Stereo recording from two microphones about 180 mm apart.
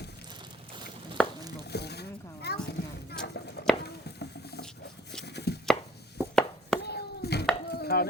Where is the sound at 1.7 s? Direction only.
65° left (ahead or behind).